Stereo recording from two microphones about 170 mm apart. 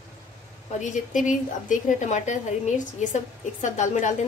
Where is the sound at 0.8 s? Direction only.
50° left (ahead or behind).